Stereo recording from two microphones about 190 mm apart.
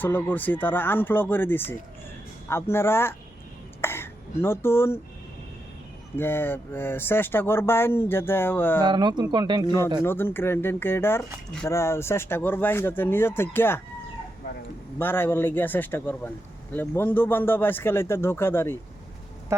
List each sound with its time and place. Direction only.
0.0 s speech: 10° left (ahead or behind)
3.8 s a sound: 10° left (ahead or behind)
6.1 s speech: 10° left (ahead or behind)
8.8 s speech: 25° right (ahead or behind)
10.0 s speech: 10° left (ahead or behind)
14.9 s speech: 10° left (ahead or behind)